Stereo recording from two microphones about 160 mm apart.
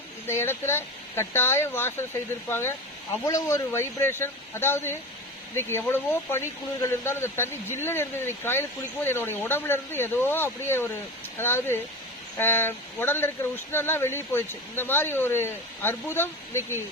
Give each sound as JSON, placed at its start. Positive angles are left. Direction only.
{"t": 0.3, "sound": "speech", "side_deg": 15}